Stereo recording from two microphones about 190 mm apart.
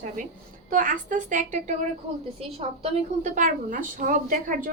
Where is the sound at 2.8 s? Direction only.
35° right (ahead or behind).